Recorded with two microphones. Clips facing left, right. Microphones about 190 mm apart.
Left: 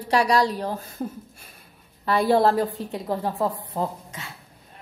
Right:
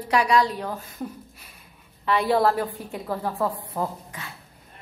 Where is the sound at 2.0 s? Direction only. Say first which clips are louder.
Left 2 dB; 40° left (ahead or behind).